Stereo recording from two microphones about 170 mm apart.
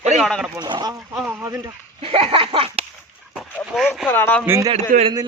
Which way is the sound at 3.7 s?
Centre (ahead or behind).